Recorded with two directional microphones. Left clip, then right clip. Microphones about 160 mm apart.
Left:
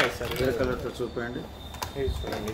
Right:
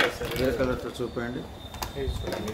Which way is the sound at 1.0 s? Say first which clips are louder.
Even; 65° right (ahead or behind).